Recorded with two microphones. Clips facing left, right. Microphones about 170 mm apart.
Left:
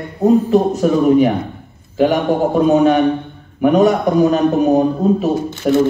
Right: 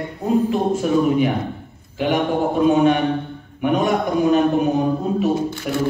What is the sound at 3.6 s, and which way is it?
Speech, 40° left (ahead or behind).